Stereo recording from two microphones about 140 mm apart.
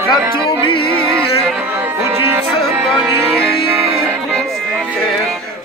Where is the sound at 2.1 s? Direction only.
15° right (ahead or behind).